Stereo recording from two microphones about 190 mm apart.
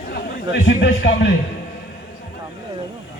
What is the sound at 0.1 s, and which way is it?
A man's voice, 65° left (ahead or behind).